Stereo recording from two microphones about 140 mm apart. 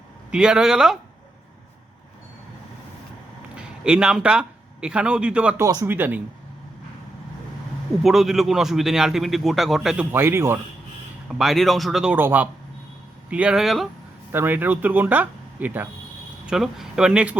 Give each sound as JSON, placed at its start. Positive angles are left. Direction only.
{"t": 0.3, "sound": "a man's voice", "side_deg": -5}
{"t": 3.5, "sound": "a man's voice", "side_deg": -5}
{"t": 5.5, "sound": "speech", "side_deg": -20}
{"t": 8.0, "sound": "a man's voice", "side_deg": -5}
{"t": 10.1, "sound": "speech", "side_deg": -15}
{"t": 11.3, "sound": "a man's voice", "side_deg": 0}
{"t": 14.3, "sound": "a man's voice", "side_deg": -15}